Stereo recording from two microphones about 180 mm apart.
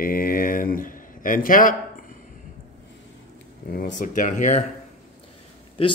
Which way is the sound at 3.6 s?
55° left (ahead or behind).